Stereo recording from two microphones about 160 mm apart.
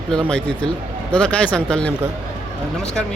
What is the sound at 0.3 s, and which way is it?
Speech, 5° left (ahead or behind).